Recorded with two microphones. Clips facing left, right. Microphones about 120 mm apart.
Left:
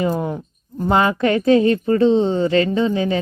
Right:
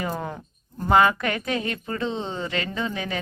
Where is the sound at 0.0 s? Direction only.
20° left (ahead or behind).